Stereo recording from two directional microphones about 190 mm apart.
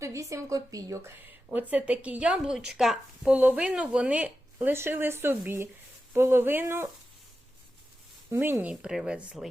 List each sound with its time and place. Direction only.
0.0 s speech: 15° right (ahead or behind)
8.3 s speech: 10° right (ahead or behind)